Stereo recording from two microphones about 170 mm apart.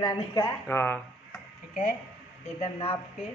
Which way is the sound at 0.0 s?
25° left (ahead or behind).